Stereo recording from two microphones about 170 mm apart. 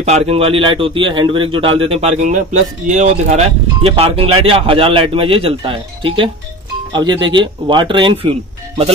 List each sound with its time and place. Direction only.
0.0 s a man's voice: 35° right (ahead or behind)